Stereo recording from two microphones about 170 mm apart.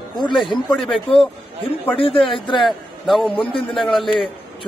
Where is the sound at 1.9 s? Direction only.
30° left (ahead or behind).